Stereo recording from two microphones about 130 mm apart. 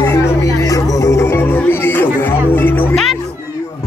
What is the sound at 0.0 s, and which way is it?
Music, 25° left (ahead or behind).